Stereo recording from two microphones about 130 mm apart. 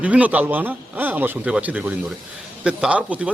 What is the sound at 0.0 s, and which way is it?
Speech, 10° right (ahead or behind).